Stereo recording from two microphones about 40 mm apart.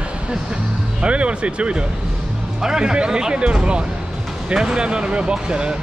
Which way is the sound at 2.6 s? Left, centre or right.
Centre.